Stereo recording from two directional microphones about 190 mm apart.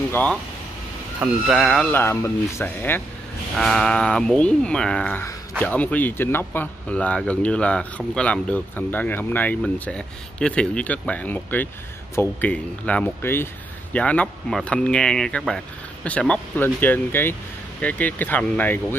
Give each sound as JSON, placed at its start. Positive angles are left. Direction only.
{"t": 0.1, "sound": "speech", "side_deg": 5}
{"t": 1.5, "sound": "speech", "side_deg": 0}